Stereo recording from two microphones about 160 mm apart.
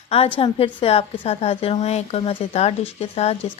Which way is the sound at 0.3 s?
35° left (ahead or behind).